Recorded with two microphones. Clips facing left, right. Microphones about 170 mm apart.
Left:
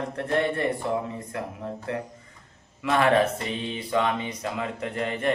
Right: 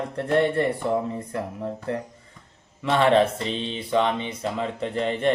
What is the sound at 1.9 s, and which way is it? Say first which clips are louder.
Speech: right 2 dB; 40° right (ahead or behind).